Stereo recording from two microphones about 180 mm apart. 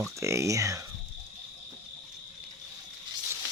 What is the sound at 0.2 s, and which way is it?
Speech, 15° right (ahead or behind).